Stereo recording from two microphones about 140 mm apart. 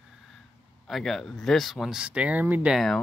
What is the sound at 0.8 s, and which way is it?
Speech, centre (ahead or behind).